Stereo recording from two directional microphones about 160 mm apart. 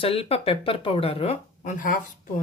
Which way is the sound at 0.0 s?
35° left (ahead or behind).